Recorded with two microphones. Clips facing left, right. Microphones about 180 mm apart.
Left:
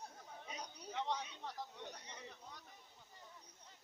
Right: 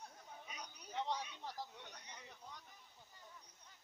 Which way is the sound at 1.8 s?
30° left (ahead or behind).